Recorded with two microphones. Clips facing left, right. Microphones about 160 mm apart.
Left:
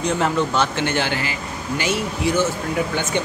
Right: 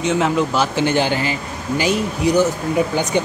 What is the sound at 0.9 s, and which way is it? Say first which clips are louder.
Speech: right 5 dB; 15° right (ahead or behind).